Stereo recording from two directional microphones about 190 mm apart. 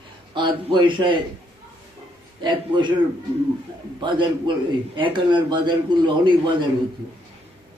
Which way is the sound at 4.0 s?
25° right (ahead or behind).